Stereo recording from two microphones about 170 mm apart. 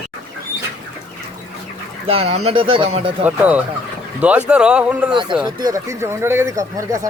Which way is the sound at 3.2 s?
10° right (ahead or behind).